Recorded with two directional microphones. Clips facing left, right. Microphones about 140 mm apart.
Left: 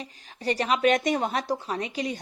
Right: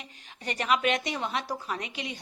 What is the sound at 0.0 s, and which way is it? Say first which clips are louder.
A woman's voice: left 8 dB; 35° left (ahead or behind).